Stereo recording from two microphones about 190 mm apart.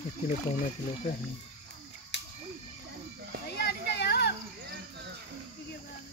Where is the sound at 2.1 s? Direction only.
65° left (ahead or behind).